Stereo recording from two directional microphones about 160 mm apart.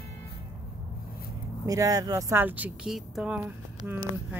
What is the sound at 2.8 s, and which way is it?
Speech, centre (ahead or behind).